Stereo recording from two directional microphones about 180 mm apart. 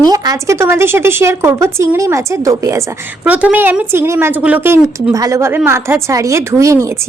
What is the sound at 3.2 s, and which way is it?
A woman's voice, 5° right (ahead or behind).